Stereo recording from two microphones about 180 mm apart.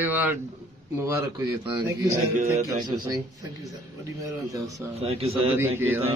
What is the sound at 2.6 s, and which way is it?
Speech, 20° right (ahead or behind).